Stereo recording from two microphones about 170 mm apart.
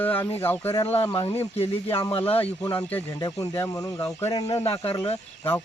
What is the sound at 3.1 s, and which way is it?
Speech, 20° left (ahead or behind).